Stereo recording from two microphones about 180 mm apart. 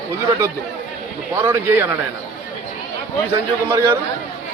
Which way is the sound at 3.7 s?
10° right (ahead or behind).